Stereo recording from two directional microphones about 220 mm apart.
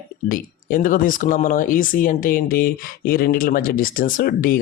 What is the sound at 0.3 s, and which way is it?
Speech, 40° left (ahead or behind).